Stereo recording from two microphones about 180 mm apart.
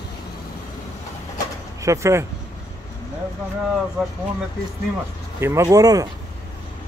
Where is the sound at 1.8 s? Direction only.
15° right (ahead or behind).